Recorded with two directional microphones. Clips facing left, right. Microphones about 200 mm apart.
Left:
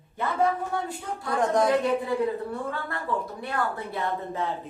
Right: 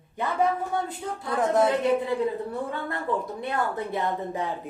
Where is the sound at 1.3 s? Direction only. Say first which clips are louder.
Right 1 dB; 5° right (ahead or behind).